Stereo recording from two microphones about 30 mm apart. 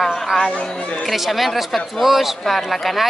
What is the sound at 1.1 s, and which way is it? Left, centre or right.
Speech, centre.